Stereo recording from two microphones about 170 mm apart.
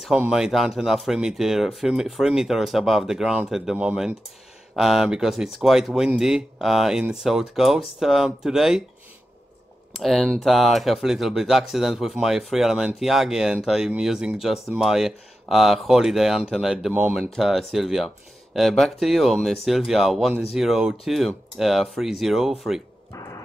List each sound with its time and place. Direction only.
0.0 s speech: 5° right (ahead or behind)
9.9 s speech: centre (ahead or behind)
23.1 s a sound: 20° left (ahead or behind)